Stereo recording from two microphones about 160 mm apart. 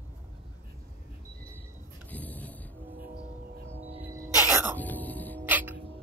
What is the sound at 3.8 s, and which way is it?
Music, 40° right (ahead or behind).